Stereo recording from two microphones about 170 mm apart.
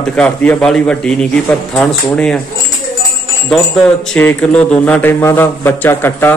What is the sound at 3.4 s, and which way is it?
Speech, 5° left (ahead or behind).